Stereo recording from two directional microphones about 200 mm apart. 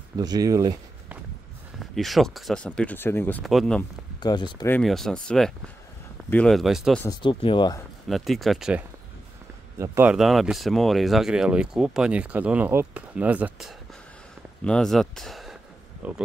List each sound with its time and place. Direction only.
0.2 s speech: 20° right (ahead or behind)
1.8 s speech: centre (ahead or behind)
4.2 s speech: 20° left (ahead or behind)
4.7 s speech: centre (ahead or behind)
7.2 s speech: 25° left (ahead or behind)
8.1 s speech: centre (ahead or behind)